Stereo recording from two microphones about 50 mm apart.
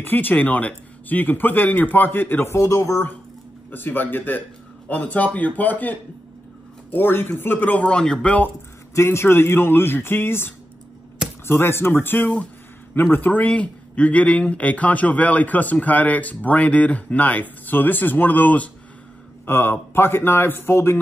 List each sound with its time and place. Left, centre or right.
0.0 s speech: left
2.4 s speech: left
3.7 s speech: left
4.8 s speech: left
6.9 s speech: left
7.6 s speech: left
7.9 s speech: centre
8.9 s speech: left